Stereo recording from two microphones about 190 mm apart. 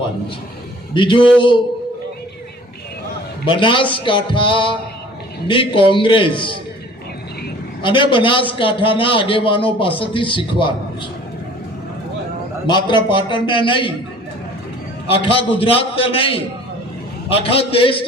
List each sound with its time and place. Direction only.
0.9 s a man's voice: 25° left (ahead or behind)
3.5 s a man's voice: 25° left (ahead or behind)
7.8 s a man's voice: 25° left (ahead or behind)
12.6 s a man's voice: 25° left (ahead or behind)
15.1 s a man's voice: 30° left (ahead or behind)